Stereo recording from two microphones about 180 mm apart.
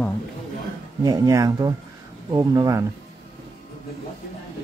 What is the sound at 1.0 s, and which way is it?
Speech, 20° right (ahead or behind).